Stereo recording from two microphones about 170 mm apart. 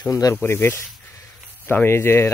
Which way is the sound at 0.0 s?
20° left (ahead or behind).